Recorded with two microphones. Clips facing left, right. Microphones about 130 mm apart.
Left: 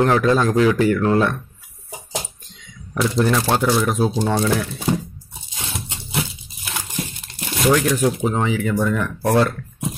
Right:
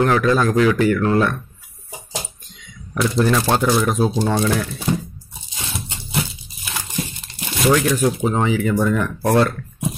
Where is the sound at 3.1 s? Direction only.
5° left (ahead or behind).